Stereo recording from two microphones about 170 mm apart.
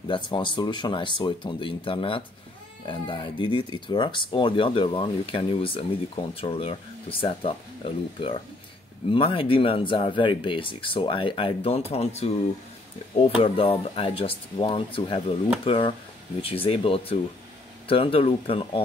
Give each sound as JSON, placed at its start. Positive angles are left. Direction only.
{"t": 0.1, "sound": "speech", "side_deg": 30}
{"t": 13.4, "sound": "speech", "side_deg": 35}